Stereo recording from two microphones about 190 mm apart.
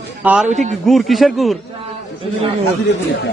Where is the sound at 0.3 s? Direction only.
10° right (ahead or behind).